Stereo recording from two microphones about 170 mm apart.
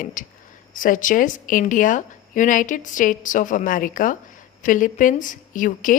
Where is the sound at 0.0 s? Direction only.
50° left (ahead or behind).